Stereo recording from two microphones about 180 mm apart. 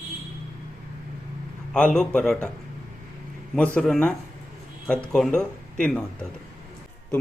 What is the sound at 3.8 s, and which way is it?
Speech, 5° left (ahead or behind).